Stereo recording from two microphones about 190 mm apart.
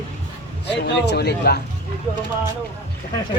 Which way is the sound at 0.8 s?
65° left (ahead or behind).